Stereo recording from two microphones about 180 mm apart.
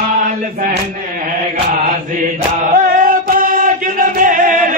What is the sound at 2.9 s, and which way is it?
Chant, 50° right (ahead or behind).